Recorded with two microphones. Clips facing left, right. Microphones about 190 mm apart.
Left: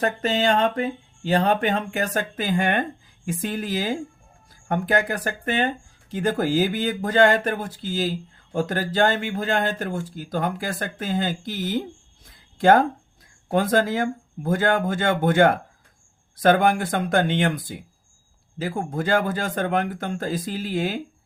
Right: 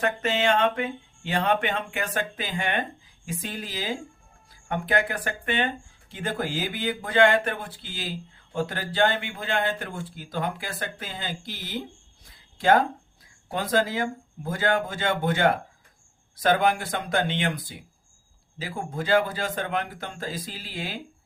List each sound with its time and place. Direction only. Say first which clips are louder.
0.0 s speech: left 3 dB; 35° left (ahead or behind)